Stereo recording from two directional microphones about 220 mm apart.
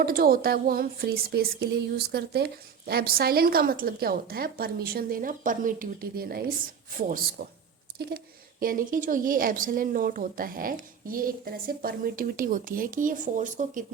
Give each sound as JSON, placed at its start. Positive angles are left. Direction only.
{"t": 0.0, "sound": "a sound", "side_deg": -40}
{"t": 6.9, "sound": "speech", "side_deg": -40}
{"t": 8.6, "sound": "speech", "side_deg": -40}